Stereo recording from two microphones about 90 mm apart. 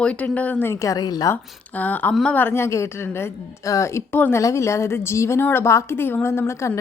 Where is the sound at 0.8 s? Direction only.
45° left (ahead or behind).